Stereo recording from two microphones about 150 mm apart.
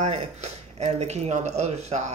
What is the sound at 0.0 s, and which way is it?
Speech, 50° right (ahead or behind).